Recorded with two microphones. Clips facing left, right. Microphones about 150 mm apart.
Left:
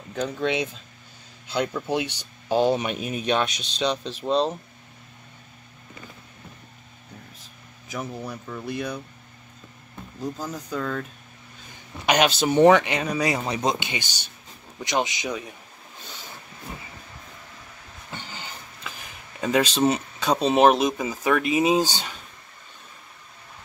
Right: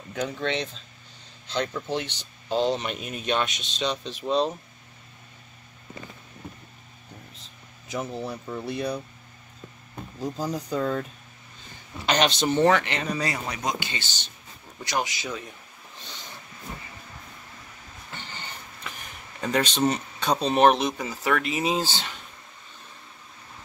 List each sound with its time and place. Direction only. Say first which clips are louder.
0.3 s speech: left 3 dB; 10° left (ahead or behind)
4.0 s speech: left 2 dB; 10° right (ahead or behind)
7.9 s speech: right 1 dB; 25° right (ahead or behind)
10.2 s speech: right 2 dB; 10° right (ahead or behind)
12.1 s speech: left 2 dB; 5° left (ahead or behind)
13.5 s speech: left 5 dB; 30° left (ahead or behind)
13.8 s speech: left 3 dB; 15° left (ahead or behind)
16.7 s vehicle: left 1 dB; 5° left (ahead or behind)
19.4 s speech: left 3 dB; 5° left (ahead or behind)